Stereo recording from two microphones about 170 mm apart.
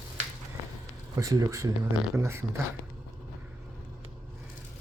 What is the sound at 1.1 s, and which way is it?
Speech, 20° right (ahead or behind).